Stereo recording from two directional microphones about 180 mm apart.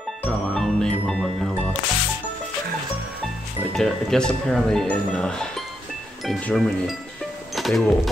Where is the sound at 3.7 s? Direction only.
Centre (ahead or behind).